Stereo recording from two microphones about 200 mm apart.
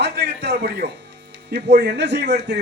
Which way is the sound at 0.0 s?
55° right (ahead or behind).